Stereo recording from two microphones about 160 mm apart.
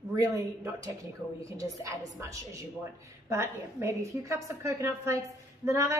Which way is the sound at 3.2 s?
15° right (ahead or behind).